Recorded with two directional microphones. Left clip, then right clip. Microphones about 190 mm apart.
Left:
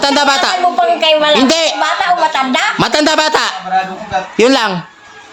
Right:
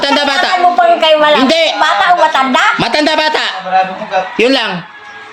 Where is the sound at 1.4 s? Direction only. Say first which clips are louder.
Right 2 dB; 25° left (ahead or behind).